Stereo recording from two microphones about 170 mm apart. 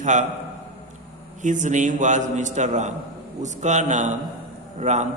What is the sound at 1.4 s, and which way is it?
A man's voice, 45° right (ahead or behind).